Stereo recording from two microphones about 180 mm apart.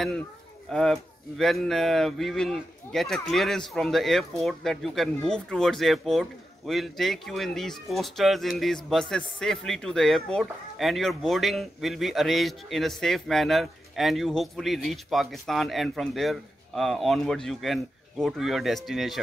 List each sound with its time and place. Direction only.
0.7 s speech: centre (ahead or behind)